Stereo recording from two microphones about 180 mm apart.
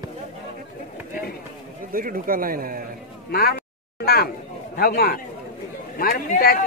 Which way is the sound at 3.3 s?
60° left (ahead or behind).